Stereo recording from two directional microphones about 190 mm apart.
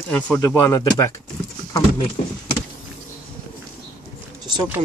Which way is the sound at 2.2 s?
45° left (ahead or behind).